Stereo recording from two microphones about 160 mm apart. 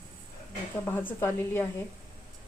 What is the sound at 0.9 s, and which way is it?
Speech, 15° left (ahead or behind).